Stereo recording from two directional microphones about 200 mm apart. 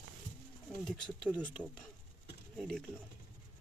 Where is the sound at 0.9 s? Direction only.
5° left (ahead or behind).